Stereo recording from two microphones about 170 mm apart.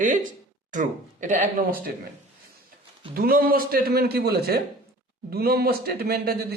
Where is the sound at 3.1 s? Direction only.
60° right (ahead or behind).